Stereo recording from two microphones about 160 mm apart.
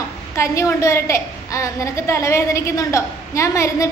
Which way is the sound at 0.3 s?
20° left (ahead or behind).